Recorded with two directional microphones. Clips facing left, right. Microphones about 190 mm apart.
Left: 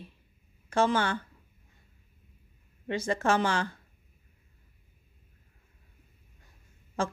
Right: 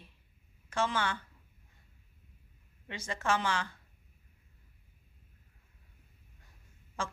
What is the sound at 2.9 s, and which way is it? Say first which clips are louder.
Speech: left 6 dB; 40° left (ahead or behind).